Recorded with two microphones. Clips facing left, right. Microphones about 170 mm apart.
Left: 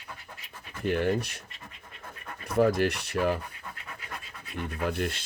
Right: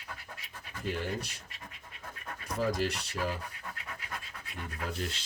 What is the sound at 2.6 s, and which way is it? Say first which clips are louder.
Speech: left 8 dB; 60° left (ahead or behind).